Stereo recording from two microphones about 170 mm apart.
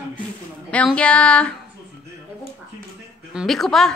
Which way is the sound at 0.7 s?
5° left (ahead or behind).